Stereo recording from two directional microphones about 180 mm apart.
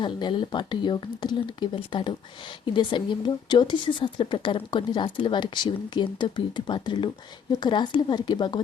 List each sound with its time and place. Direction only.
0.0 s a woman's voice: 25° left (ahead or behind)